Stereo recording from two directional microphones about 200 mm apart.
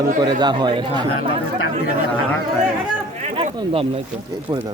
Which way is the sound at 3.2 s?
30° right (ahead or behind).